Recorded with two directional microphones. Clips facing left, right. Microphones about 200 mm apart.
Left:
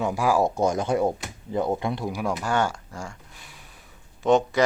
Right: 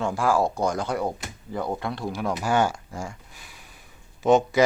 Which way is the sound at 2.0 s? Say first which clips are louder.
Left 1 dB; 5° left (ahead or behind).